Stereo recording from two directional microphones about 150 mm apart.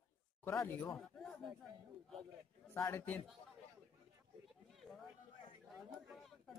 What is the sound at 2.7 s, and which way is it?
Speech, 15° left (ahead or behind).